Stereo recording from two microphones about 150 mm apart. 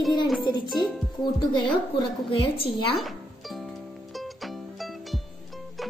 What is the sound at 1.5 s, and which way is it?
A woman's voice, 30° left (ahead or behind).